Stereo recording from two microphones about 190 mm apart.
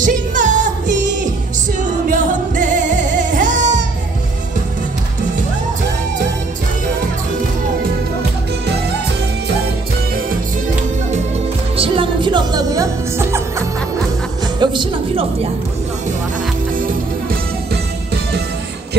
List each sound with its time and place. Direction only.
0.0 s music: 40° right (ahead or behind)
2.0 s music: 45° right (ahead or behind)
11.7 s music: 30° right (ahead or behind)